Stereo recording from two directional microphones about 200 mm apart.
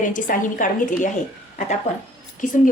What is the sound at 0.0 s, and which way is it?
A woman's voice, 40° left (ahead or behind).